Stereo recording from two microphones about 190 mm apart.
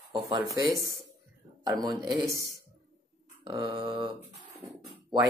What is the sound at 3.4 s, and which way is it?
Speech, 25° right (ahead or behind).